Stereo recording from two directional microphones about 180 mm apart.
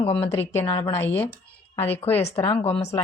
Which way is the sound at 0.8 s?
15° left (ahead or behind).